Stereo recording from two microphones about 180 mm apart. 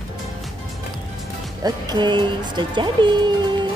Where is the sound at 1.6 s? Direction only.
20° right (ahead or behind).